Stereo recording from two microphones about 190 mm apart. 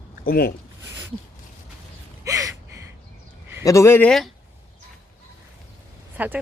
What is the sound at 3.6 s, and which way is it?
Speech, 15° left (ahead or behind).